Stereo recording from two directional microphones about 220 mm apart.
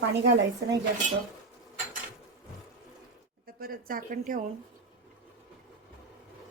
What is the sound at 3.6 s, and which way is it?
Speech, 40° right (ahead or behind).